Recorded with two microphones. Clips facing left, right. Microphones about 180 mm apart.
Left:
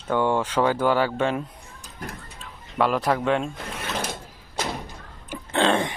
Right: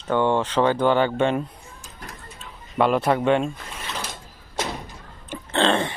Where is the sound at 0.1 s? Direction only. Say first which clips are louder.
Right 2 dB; 10° left (ahead or behind).